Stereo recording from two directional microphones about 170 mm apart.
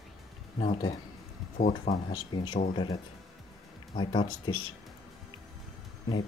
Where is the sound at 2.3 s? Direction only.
25° left (ahead or behind).